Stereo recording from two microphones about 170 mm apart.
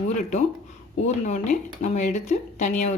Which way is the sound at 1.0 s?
45° left (ahead or behind).